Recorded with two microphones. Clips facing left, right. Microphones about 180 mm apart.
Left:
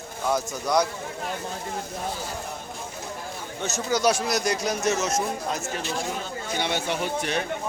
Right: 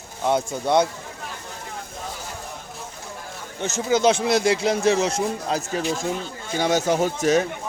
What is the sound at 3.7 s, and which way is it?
A man's voice, 25° right (ahead or behind).